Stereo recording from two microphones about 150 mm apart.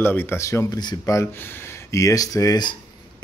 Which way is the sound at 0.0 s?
15° left (ahead or behind).